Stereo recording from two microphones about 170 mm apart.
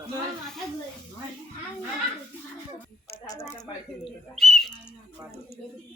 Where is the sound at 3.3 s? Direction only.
15° left (ahead or behind).